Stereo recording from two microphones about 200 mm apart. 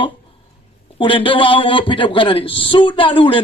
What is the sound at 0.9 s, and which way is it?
Speech, 25° left (ahead or behind).